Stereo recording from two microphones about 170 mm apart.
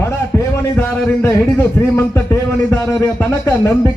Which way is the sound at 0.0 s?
15° left (ahead or behind).